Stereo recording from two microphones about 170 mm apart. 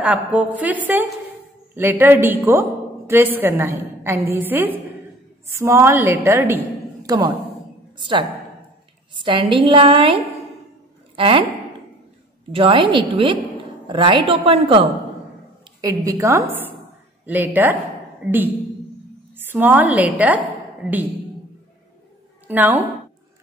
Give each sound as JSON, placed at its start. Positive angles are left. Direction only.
{"t": 0.0, "sound": "a woman's voice", "side_deg": -5}
{"t": 11.1, "sound": "speech", "side_deg": -30}
{"t": 12.5, "sound": "a woman's voice", "side_deg": -30}
{"t": 15.8, "sound": "a woman's voice", "side_deg": -20}
{"t": 22.5, "sound": "a woman's voice", "side_deg": -10}